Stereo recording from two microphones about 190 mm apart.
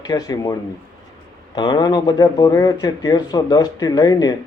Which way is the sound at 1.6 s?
20° left (ahead or behind).